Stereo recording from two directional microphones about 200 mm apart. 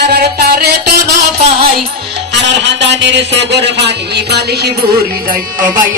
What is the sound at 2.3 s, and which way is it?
A man's voice, 60° right (ahead or behind).